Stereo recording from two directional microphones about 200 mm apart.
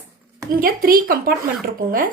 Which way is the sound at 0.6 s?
45° right (ahead or behind).